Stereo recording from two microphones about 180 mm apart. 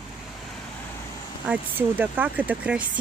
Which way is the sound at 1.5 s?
10° right (ahead or behind).